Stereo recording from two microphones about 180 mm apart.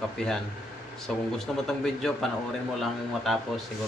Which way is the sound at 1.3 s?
Centre (ahead or behind).